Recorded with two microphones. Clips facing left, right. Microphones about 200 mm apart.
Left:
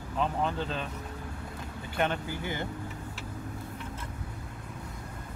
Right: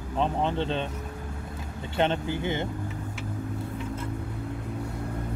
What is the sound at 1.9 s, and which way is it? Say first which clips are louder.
Speech: right 5 dB; 25° right (ahead or behind).